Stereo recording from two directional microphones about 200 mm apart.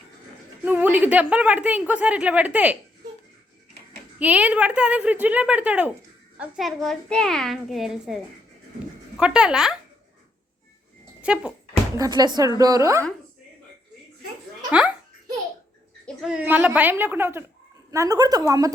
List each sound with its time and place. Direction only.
0.6 s a woman's voice: 10° right (ahead or behind)
4.2 s a woman's voice: 5° right (ahead or behind)
11.2 s speech: 5° right (ahead or behind)
11.9 s a woman's voice: 20° right (ahead or behind)
14.7 s a sound: 5° right (ahead or behind)
16.0 s a woman's voice: 5° right (ahead or behind)